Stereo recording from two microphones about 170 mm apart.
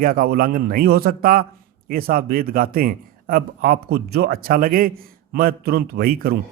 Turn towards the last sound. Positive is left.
turn(degrees=-60)  # may be behind; listen again after turning